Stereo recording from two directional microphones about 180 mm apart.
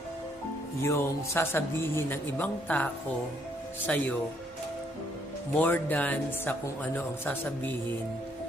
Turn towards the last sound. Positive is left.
turn(degrees=10)  # may be behind; listen again after turning